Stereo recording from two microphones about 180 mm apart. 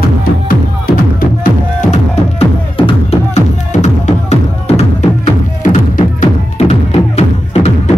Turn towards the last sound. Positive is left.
turn(degrees=35)  # may be behind; listen again after turning